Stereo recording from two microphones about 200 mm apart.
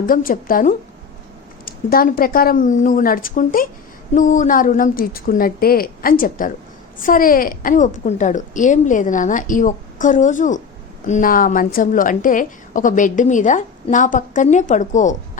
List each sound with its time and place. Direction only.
0.0 s a woman's voice: 45° left (ahead or behind)